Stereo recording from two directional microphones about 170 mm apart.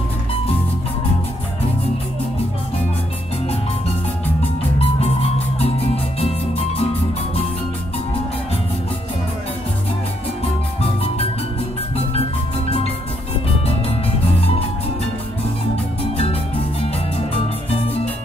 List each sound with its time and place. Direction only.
6.2 s music: 35° left (ahead or behind)